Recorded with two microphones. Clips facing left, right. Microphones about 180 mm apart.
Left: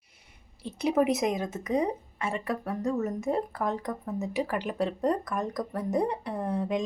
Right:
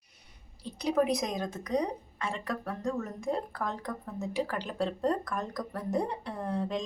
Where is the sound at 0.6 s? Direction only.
25° left (ahead or behind).